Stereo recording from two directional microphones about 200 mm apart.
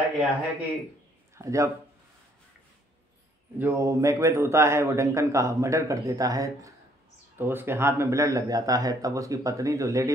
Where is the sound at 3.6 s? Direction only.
15° right (ahead or behind).